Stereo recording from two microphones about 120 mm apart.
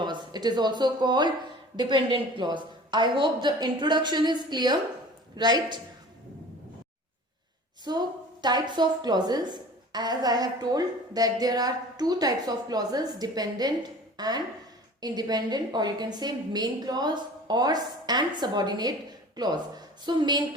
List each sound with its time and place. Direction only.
0.0 s a woman's voice: 35° right (ahead or behind)
7.9 s a woman's voice: 35° right (ahead or behind)